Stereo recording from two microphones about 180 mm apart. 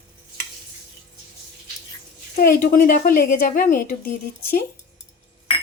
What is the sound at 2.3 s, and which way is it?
A woman's voice, 55° left (ahead or behind).